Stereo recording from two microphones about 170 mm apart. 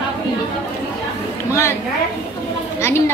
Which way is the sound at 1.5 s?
15° left (ahead or behind).